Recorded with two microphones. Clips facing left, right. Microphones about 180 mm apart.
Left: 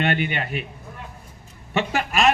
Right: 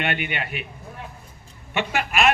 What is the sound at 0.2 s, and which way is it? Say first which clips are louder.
Speech: left 4 dB; 40° left (ahead or behind).